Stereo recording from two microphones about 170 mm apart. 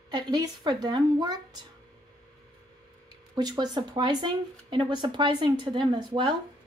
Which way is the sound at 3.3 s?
25° right (ahead or behind).